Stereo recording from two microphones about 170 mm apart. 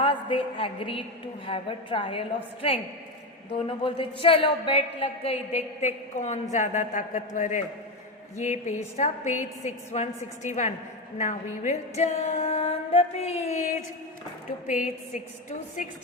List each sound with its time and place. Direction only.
0.0 s a woman's voice: 30° left (ahead or behind)
14.7 s a woman's voice: 50° left (ahead or behind)